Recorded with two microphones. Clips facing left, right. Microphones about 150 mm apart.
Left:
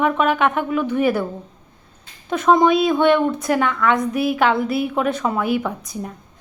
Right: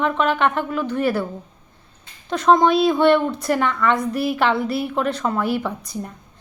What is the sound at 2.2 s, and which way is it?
A woman's voice, 5° left (ahead or behind).